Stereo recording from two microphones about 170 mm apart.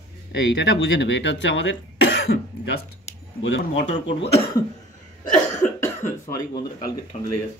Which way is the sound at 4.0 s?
35° left (ahead or behind).